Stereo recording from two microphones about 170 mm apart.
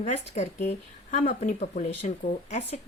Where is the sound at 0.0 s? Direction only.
40° left (ahead or behind).